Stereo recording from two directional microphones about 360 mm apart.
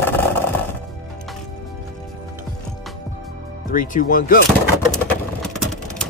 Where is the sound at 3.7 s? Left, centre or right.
Left.